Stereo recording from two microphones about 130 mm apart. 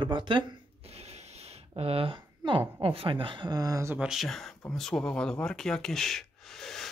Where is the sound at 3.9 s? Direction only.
5° right (ahead or behind).